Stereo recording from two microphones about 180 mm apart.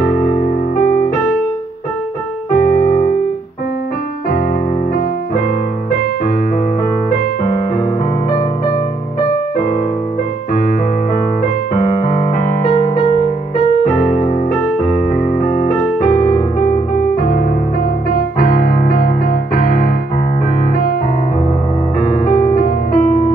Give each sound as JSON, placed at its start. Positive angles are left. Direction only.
{"t": 0.1, "sound": "music", "side_deg": 50}
{"t": 2.5, "sound": "keyboard", "side_deg": 55}
{"t": 11.7, "sound": "keyboard", "side_deg": 50}
{"t": 13.9, "sound": "piano", "side_deg": 50}
{"t": 15.2, "sound": "music", "side_deg": 45}
{"t": 18.4, "sound": "music", "side_deg": 50}
{"t": 22.0, "sound": "music", "side_deg": 45}